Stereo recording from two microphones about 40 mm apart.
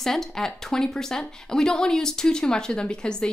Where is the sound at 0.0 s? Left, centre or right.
Centre.